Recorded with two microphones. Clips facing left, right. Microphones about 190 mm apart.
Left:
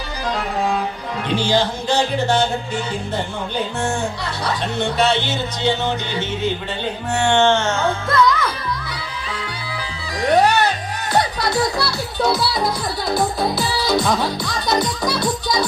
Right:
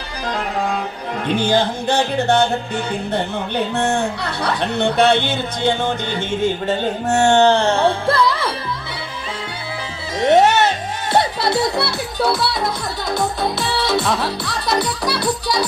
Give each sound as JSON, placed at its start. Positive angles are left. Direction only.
{"t": 1.4, "sound": "music", "side_deg": -55}
{"t": 10.2, "sound": "music", "side_deg": -25}
{"t": 11.1, "sound": "a child's voice", "side_deg": -25}
{"t": 12.2, "sound": "music", "side_deg": 0}
{"t": 14.5, "sound": "music", "side_deg": -30}